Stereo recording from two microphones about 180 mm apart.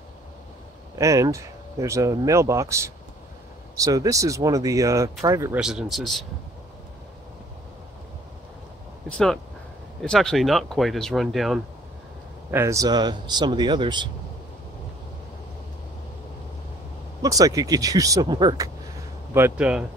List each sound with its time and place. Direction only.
0.9 s speech: 15° right (ahead or behind)
5.6 s speech: 5° right (ahead or behind)
10.0 s speech: centre (ahead or behind)
12.4 s speech: 15° right (ahead or behind)
17.2 s speech: 20° right (ahead or behind)
19.3 s speech: 10° right (ahead or behind)